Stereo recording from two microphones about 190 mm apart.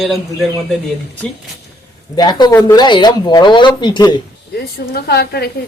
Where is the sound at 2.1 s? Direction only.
20° left (ahead or behind).